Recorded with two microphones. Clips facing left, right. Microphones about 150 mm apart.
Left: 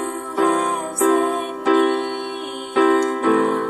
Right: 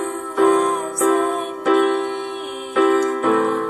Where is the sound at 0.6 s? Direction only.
Centre (ahead or behind).